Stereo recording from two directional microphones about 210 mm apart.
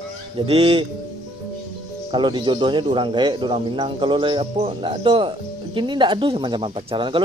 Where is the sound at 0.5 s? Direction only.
25° right (ahead or behind).